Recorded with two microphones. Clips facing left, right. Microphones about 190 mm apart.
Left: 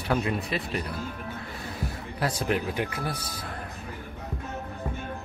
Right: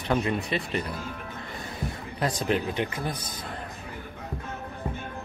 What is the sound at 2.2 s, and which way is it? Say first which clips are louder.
Speech: right 1 dB; 5° left (ahead or behind).